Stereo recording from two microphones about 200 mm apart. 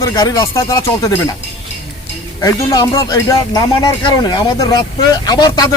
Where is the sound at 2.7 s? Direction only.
15° left (ahead or behind).